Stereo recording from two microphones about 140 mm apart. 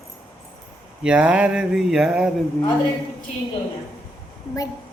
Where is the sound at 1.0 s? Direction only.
5° right (ahead or behind).